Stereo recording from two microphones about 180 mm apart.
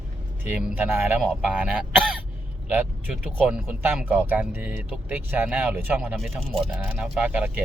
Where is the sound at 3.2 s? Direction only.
5° right (ahead or behind).